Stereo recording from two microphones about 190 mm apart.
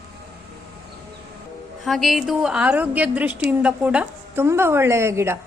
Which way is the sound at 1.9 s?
Centre (ahead or behind).